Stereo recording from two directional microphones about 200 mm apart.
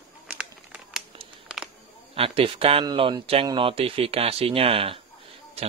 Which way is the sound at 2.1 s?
25° right (ahead or behind).